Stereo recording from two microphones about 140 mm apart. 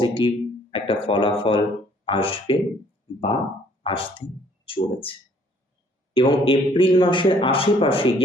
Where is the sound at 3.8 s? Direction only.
40° left (ahead or behind).